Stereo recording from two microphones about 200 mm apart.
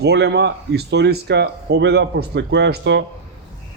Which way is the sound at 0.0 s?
55° right (ahead or behind).